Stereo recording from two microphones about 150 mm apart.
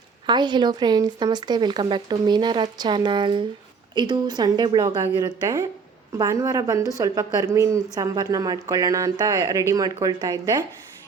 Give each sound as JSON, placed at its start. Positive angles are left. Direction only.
{"t": 0.3, "sound": "a woman's voice", "side_deg": -30}